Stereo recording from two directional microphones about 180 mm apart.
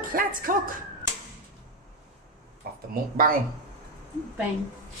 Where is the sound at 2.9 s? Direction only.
55° right (ahead or behind).